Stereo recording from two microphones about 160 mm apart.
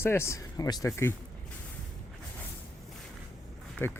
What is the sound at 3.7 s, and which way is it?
Speech, 15° left (ahead or behind).